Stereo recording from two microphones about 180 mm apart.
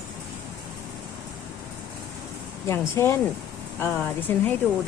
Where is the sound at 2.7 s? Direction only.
15° left (ahead or behind).